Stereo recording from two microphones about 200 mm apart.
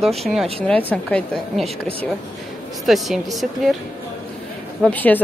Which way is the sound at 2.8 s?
Centre (ahead or behind).